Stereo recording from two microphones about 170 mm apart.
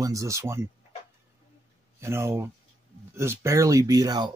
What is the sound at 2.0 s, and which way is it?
Speech, 15° right (ahead or behind).